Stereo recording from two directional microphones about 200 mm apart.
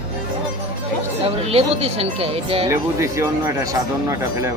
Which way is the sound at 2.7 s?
15° right (ahead or behind).